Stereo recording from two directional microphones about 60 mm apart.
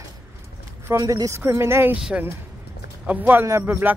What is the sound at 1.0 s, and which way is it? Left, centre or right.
Speech, right.